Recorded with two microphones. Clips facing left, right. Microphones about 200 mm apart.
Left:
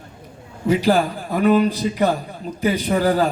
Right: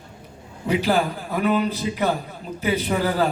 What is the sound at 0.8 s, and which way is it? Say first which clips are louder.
Speech: left 1 dB; 40° left (ahead or behind).